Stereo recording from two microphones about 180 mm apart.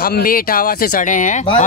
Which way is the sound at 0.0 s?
55° left (ahead or behind).